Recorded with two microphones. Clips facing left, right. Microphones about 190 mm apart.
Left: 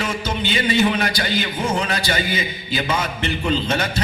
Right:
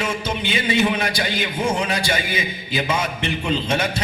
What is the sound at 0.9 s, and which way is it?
A man's voice, 10° right (ahead or behind).